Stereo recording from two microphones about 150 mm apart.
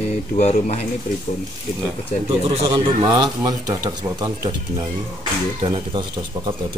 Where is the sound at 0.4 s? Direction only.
50° left (ahead or behind).